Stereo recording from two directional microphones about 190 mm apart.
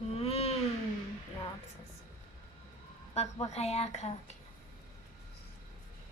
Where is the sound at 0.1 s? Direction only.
30° left (ahead or behind).